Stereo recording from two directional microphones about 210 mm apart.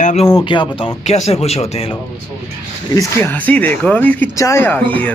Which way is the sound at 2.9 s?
15° left (ahead or behind).